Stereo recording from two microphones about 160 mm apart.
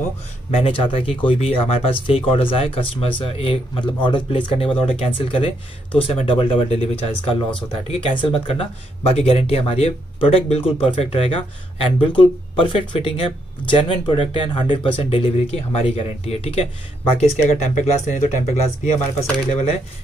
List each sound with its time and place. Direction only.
0.5 s speech: 35° left (ahead or behind)